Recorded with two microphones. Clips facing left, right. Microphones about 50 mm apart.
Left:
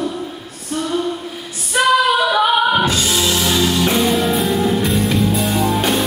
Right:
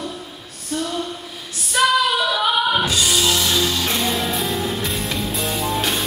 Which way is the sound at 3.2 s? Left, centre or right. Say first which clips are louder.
Left 3 dB; centre.